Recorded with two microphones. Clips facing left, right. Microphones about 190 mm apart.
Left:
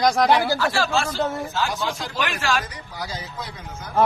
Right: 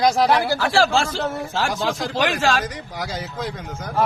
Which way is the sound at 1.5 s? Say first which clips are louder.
Right 3 dB; 85° right.